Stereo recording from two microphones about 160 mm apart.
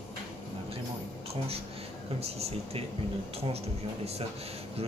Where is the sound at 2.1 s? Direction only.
40° right (ahead or behind).